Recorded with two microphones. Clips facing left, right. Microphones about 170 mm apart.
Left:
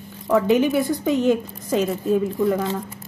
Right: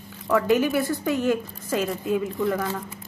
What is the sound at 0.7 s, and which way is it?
Speech, 15° left (ahead or behind).